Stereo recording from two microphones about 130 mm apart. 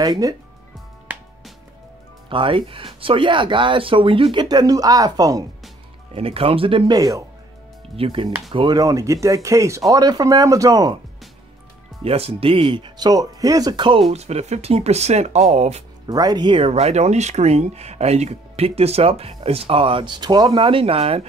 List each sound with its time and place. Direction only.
0.0 s speech: 30° right (ahead or behind)
2.2 s speech: 40° right (ahead or behind)
6.1 s speech: 45° right (ahead or behind)
6.9 s speech: 30° right (ahead or behind)
7.9 s speech: 45° right (ahead or behind); by 11.0 s 25° right (ahead or behind)
12.0 s speech: 50° right (ahead or behind)
14.1 s speech: 55° right (ahead or behind)
16.1 s speech: 30° right (ahead or behind)
20.6 s speech: 50° right (ahead or behind)